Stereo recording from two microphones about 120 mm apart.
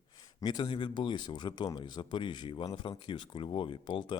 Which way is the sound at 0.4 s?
40° left (ahead or behind).